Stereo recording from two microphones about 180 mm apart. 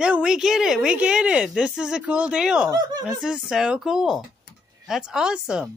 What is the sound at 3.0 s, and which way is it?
Speech, 5° right (ahead or behind).